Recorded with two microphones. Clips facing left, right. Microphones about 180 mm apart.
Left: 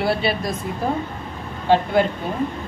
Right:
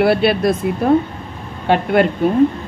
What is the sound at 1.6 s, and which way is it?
Speech, 65° right (ahead or behind).